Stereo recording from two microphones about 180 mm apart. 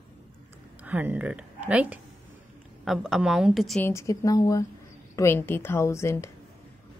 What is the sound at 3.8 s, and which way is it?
Speech, 15° left (ahead or behind).